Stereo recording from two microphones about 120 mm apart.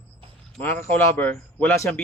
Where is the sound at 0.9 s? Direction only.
15° left (ahead or behind).